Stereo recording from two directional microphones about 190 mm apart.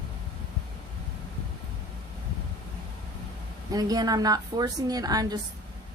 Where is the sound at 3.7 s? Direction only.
20° right (ahead or behind).